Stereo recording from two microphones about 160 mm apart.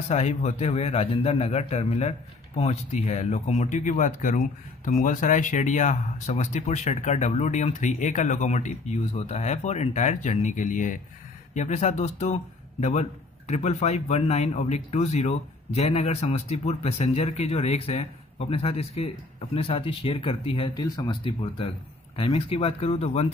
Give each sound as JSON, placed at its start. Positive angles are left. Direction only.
{"t": 0.1, "sound": "a man's voice", "side_deg": 45}
{"t": 13.5, "sound": "speech", "side_deg": 45}